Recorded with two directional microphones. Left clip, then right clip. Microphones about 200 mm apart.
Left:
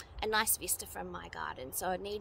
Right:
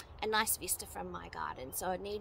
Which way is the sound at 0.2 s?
10° left (ahead or behind).